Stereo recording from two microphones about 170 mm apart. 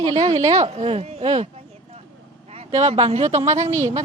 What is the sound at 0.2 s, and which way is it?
Speech, 40° right (ahead or behind).